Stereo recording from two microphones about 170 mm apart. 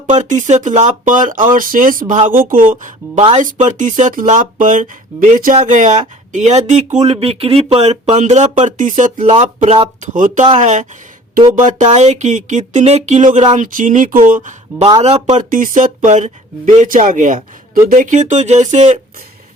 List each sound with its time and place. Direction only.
0.1 s speech: 45° right (ahead or behind)